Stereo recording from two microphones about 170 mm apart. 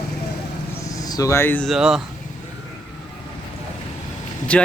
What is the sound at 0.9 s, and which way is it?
Speech, 20° left (ahead or behind).